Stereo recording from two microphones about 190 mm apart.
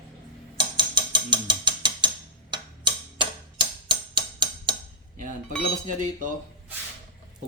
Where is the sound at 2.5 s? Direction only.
25° right (ahead or behind).